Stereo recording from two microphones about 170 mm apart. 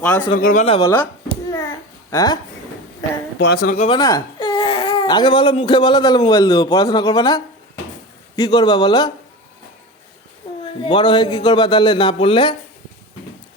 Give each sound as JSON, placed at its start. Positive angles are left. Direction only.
{"t": 0.0, "sound": "speech", "side_deg": 10}
{"t": 0.3, "sound": "speech", "side_deg": 50}
{"t": 0.8, "sound": "speech", "side_deg": 20}
{"t": 2.0, "sound": "a man's voice", "side_deg": 20}
{"t": 3.3, "sound": "speech", "side_deg": 75}
{"t": 3.8, "sound": "a man's voice", "side_deg": 30}
{"t": 10.4, "sound": "a sound", "side_deg": 30}
{"t": 10.8, "sound": "a man's voice", "side_deg": 30}